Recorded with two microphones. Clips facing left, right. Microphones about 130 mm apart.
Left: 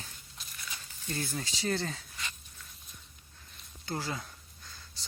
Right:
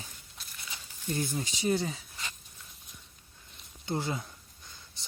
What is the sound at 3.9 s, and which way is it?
Speech, 20° right (ahead or behind).